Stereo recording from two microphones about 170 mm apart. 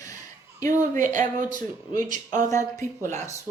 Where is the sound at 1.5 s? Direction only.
50° right (ahead or behind).